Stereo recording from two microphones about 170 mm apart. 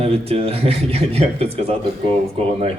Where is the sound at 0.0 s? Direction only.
35° right (ahead or behind).